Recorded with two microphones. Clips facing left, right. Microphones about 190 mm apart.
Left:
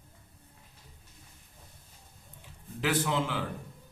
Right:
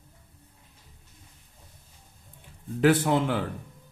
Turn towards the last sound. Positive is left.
turn(degrees=-55)  # may be behind; listen again after turning